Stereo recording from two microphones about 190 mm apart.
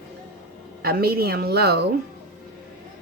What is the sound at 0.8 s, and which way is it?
A woman's voice, 55° right (ahead or behind).